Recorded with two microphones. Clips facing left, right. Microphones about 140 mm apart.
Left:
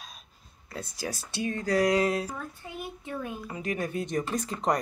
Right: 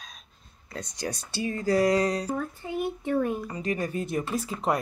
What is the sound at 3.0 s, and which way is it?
Speech, 55° right (ahead or behind).